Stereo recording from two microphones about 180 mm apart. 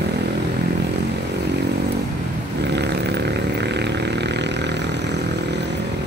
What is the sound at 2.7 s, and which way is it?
Vehicle, 70° right (ahead or behind).